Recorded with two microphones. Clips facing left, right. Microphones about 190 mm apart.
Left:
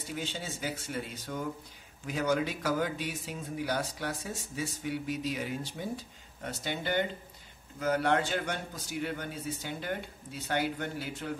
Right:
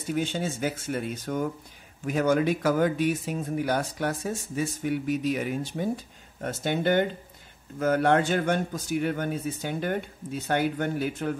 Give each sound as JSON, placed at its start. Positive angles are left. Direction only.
{"t": 0.1, "sound": "speech", "side_deg": -50}